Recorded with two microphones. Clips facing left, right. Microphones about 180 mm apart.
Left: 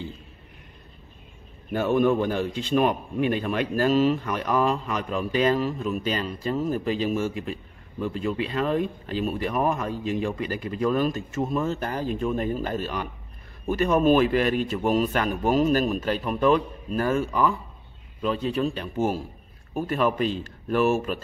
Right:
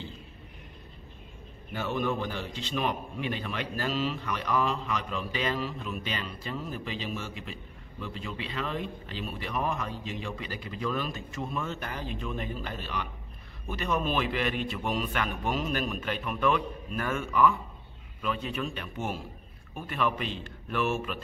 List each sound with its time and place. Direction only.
1.7 s a man's voice: 50° left (ahead or behind)